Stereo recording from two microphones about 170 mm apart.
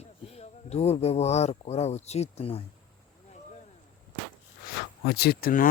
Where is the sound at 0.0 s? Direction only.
40° left (ahead or behind).